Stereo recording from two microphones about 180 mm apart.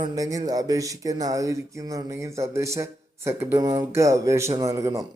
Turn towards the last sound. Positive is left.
turn(degrees=-15)  # may be behind; listen again after turning